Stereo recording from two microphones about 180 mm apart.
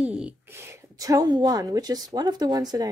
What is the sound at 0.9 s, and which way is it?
A woman's voice, 20° right (ahead or behind).